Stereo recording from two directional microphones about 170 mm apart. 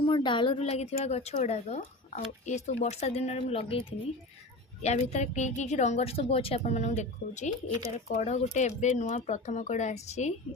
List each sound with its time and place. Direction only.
0.0 s a woman's voice: 30° left (ahead or behind)